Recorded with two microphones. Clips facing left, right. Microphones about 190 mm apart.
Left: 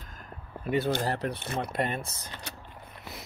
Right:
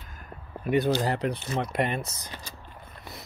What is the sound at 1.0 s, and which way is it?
Speech, 15° right (ahead or behind).